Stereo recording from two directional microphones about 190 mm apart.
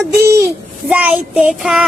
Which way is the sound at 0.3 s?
15° right (ahead or behind).